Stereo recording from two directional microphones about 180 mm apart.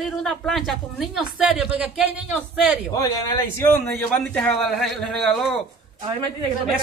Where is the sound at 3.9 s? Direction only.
5° left (ahead or behind).